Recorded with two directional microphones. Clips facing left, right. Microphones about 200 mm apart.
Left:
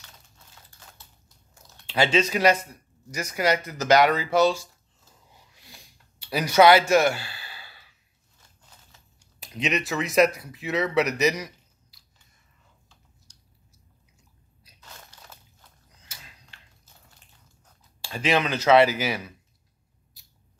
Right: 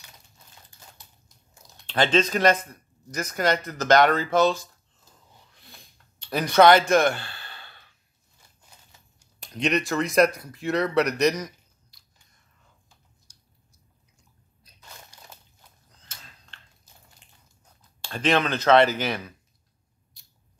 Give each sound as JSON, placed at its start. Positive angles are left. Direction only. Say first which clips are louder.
{"t": 1.9, "sound": "speech", "louder": "right 1 dB", "side_deg": 10}
{"t": 5.1, "sound": "a sound", "louder": "even", "side_deg": 10}
{"t": 9.4, "sound": "speech", "louder": "right 3 dB", "side_deg": 5}
{"t": 13.3, "sound": "chewing", "louder": "left 2 dB", "side_deg": -10}
{"t": 14.1, "sound": "chewing", "louder": "left 1 dB", "side_deg": 10}
{"t": 15.1, "sound": "crunch", "louder": "even", "side_deg": -10}
{"t": 16.0, "sound": "a sound", "louder": "even", "side_deg": 10}
{"t": 18.0, "sound": "speech", "louder": "right 1 dB", "side_deg": 10}